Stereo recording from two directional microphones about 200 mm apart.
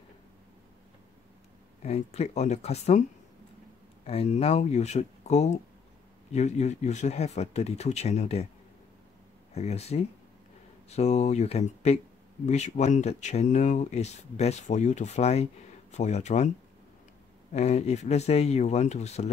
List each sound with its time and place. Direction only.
1.8 s speech: 35° left (ahead or behind)
9.6 s speech: 35° left (ahead or behind)